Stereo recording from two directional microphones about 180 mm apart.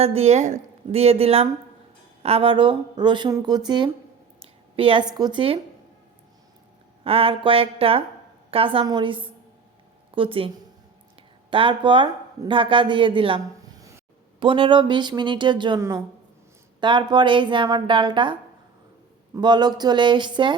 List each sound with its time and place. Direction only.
0.0 s a woman's voice: 35° right (ahead or behind)
4.4 s a sound: 30° right (ahead or behind)
5.1 s speech: 25° right (ahead or behind)
7.0 s a woman's voice: 30° right (ahead or behind)
11.5 s a woman's voice: 25° right (ahead or behind)